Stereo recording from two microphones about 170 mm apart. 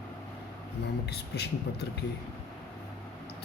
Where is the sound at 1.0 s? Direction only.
75° left (ahead or behind).